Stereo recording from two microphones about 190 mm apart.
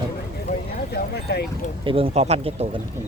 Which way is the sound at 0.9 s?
55° left (ahead or behind).